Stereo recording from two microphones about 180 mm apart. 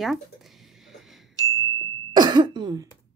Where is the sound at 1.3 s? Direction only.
20° left (ahead or behind).